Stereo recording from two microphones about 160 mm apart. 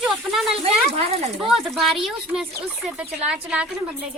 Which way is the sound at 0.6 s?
40° right (ahead or behind).